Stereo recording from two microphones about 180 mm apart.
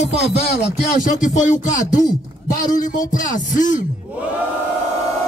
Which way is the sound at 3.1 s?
45° left (ahead or behind).